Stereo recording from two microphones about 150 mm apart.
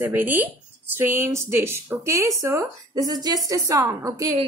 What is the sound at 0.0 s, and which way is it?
A woman's voice, 15° right (ahead or behind).